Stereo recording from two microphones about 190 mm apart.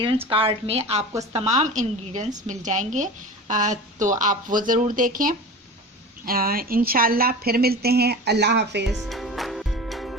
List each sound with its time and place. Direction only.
0.3 s a woman's voice: 30° right (ahead or behind); by 8.9 s 65° right (ahead or behind)
8.9 s music: centre (ahead or behind)